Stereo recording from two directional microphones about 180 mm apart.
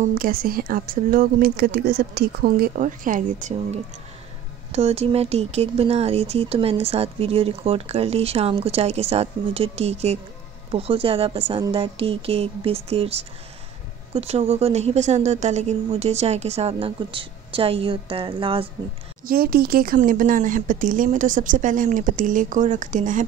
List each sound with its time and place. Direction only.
0.0 s speech: 50° right (ahead or behind); by 18.7 s 30° right (ahead or behind)
19.2 s speech: 55° right (ahead or behind)